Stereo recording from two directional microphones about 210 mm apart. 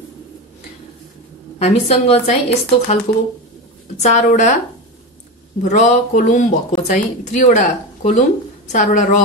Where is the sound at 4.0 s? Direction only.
35° left (ahead or behind).